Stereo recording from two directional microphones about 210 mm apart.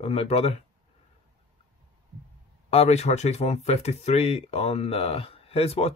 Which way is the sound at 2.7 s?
30° left (ahead or behind).